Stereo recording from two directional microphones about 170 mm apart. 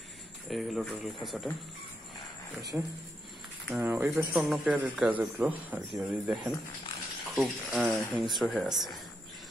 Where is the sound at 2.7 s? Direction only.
20° right (ahead or behind).